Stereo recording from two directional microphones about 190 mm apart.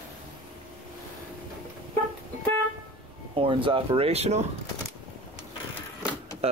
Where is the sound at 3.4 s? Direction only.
25° right (ahead or behind).